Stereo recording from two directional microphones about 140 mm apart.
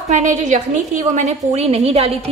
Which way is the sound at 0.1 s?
60° right (ahead or behind).